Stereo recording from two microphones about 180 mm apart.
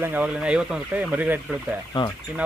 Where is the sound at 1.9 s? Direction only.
25° left (ahead or behind).